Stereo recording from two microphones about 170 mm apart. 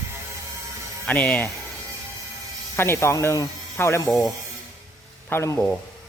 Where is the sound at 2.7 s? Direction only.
15° left (ahead or behind).